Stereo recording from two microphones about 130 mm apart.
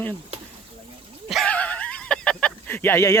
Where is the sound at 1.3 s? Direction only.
10° left (ahead or behind).